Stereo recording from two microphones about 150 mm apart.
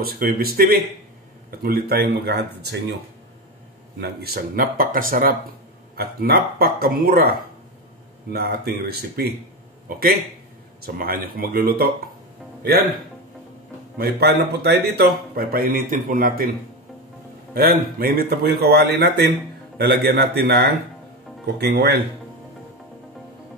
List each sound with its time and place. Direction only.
0.0 s a man's voice: 80° right
4.0 s speech: 90° right; by 5.3 s 70° right (ahead or behind)
5.9 s a man's voice: 90° right
9.8 s speech: 75° right (ahead or behind)
13.9 s speech: 90° right; by 16.4 s 70° right (ahead or behind)
17.6 s a man's voice: 90° right